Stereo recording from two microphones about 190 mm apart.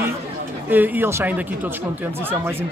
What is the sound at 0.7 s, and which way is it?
Speech, 10° right (ahead or behind).